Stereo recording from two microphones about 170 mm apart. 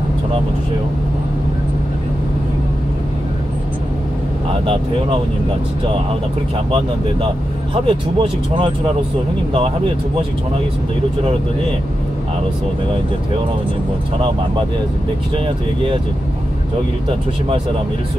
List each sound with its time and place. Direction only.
7.7 s speech: 30° right (ahead or behind)
15.3 s speech: 35° right (ahead or behind)